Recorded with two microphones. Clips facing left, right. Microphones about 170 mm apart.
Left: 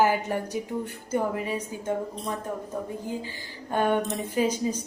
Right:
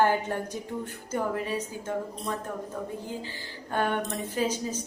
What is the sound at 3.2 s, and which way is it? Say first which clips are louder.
A woman's voice: left 1 dB; 15° left (ahead or behind).